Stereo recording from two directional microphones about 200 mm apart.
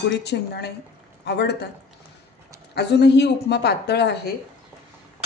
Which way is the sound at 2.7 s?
55° left (ahead or behind).